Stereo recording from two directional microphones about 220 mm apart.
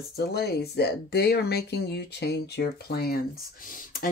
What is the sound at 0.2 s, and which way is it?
Speech, 45° left (ahead or behind).